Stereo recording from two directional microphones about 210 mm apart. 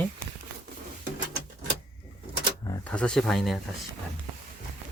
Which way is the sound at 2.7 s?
5° left (ahead or behind).